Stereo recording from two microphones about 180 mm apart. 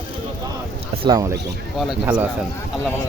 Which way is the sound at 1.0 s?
20° right (ahead or behind).